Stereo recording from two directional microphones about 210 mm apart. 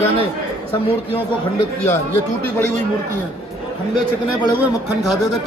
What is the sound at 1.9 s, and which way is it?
Speech, 10° left (ahead or behind).